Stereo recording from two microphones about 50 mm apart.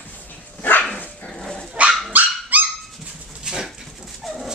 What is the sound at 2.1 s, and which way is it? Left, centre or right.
Dog, right.